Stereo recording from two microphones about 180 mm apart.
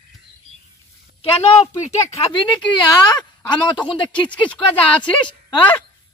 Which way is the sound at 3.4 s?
25° left (ahead or behind).